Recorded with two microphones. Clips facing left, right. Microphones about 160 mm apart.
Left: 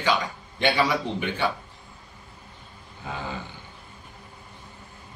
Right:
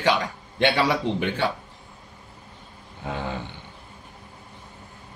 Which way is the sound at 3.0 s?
65° right (ahead or behind).